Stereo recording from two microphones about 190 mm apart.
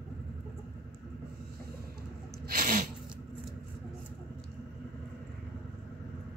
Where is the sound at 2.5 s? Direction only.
45° right (ahead or behind).